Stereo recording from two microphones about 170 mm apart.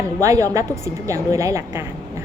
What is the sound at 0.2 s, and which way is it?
A woman's voice, 20° right (ahead or behind).